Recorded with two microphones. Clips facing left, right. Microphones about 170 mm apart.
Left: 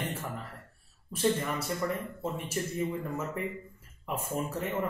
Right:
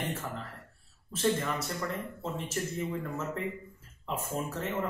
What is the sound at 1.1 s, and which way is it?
Speech, 10° left (ahead or behind).